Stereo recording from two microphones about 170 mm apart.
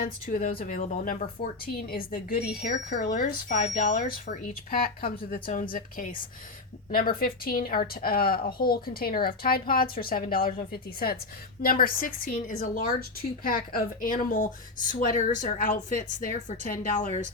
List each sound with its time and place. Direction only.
0.0 s speech: 50° left (ahead or behind)
1.6 s a woman's voice: 60° left (ahead or behind)